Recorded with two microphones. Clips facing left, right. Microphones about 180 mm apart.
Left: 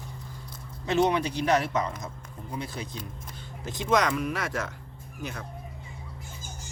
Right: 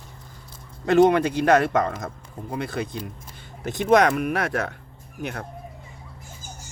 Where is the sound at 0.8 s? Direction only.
50° right (ahead or behind).